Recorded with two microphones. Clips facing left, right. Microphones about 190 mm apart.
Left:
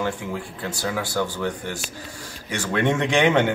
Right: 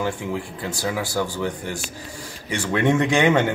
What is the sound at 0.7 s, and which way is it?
Speech, 10° right (ahead or behind).